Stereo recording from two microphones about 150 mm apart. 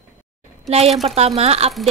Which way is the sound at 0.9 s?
Centre (ahead or behind).